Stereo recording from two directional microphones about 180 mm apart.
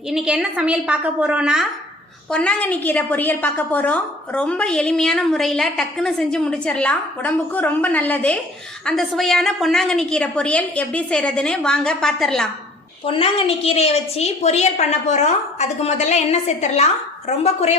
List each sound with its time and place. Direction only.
0.1 s a woman's voice: 5° right (ahead or behind)
2.3 s a woman's voice: 5° left (ahead or behind)
13.1 s a woman's voice: 30° left (ahead or behind)